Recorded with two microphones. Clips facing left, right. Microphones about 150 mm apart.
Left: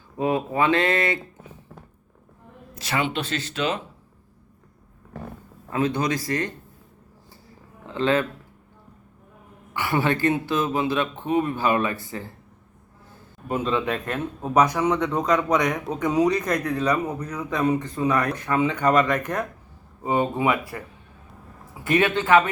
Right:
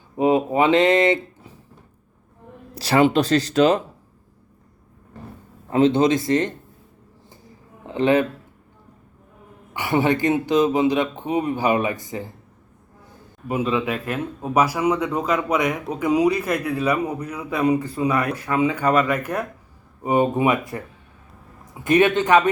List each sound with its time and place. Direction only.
0.2 s speech: 20° right (ahead or behind)
2.7 s speech: 35° right (ahead or behind)
5.7 s speech: 25° right (ahead or behind)
7.9 s a man's voice: 15° right (ahead or behind)
9.7 s a man's voice: 15° right (ahead or behind)